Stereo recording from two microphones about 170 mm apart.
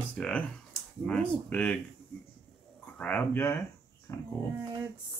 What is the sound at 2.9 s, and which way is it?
Speech, 10° left (ahead or behind).